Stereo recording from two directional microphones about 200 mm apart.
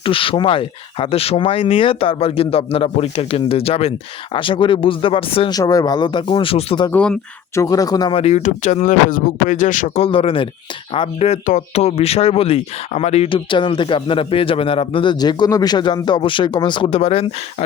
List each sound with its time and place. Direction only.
0.0 s speech: 25° left (ahead or behind)
6.9 s speech: 5° left (ahead or behind)
7.6 s speech: 20° left (ahead or behind)